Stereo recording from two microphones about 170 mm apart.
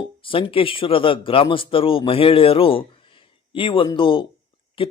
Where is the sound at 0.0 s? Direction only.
30° left (ahead or behind).